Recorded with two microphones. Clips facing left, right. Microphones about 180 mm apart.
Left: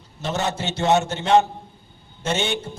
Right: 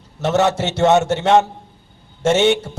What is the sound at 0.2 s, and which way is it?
A man's voice, 75° right (ahead or behind).